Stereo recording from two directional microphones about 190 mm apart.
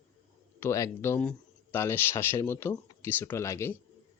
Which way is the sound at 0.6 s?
15° left (ahead or behind).